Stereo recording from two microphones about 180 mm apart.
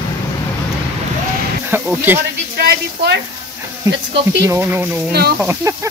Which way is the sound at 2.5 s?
65° right (ahead or behind).